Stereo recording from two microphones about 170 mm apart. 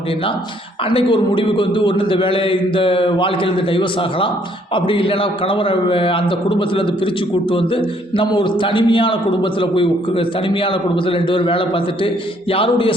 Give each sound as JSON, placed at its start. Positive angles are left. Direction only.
{"t": 0.9, "sound": "a man's voice", "side_deg": 30}